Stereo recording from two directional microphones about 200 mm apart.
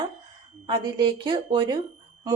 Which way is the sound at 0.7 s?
25° right (ahead or behind).